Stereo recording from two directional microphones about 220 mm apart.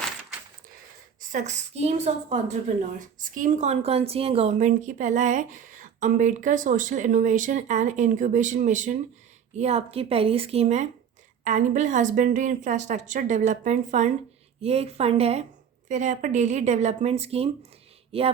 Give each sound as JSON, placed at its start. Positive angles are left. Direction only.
{"t": 1.2, "sound": "a woman's voice", "side_deg": -35}